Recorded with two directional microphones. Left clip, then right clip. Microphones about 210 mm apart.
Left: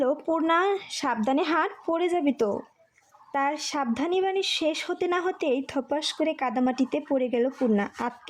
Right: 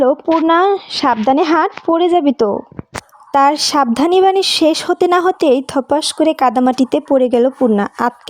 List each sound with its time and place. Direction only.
0.0 s speech: 30° right (ahead or behind)